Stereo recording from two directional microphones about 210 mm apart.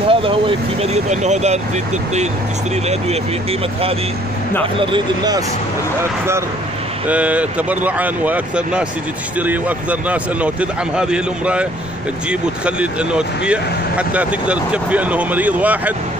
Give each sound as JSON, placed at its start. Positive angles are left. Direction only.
{"t": 0.0, "sound": "vehicle", "side_deg": -25}
{"t": 0.9, "sound": "speech", "side_deg": -35}
{"t": 4.7, "sound": "speech", "side_deg": -20}
{"t": 7.1, "sound": "speech", "side_deg": -5}